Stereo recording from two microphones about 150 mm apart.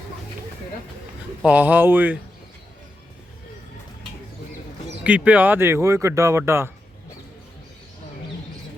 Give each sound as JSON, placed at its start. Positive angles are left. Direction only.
{"t": 1.4, "sound": "speech", "side_deg": -10}
{"t": 5.0, "sound": "speech", "side_deg": -10}